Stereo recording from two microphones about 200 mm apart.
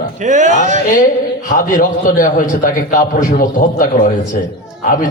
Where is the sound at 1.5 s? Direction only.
45° left (ahead or behind).